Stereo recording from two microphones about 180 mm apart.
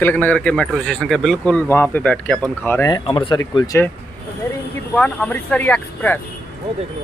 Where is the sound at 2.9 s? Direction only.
25° left (ahead or behind).